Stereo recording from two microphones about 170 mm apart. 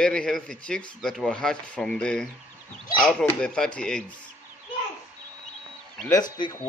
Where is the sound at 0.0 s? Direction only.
5° left (ahead or behind).